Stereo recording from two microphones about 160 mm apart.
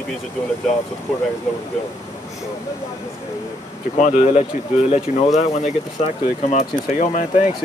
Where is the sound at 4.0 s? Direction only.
50° left (ahead or behind).